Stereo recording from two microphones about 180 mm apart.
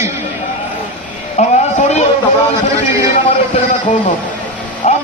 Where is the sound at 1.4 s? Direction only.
40° left (ahead or behind).